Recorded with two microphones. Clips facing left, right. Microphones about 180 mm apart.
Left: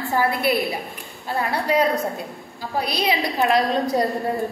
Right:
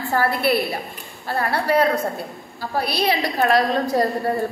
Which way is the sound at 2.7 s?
15° left (ahead or behind).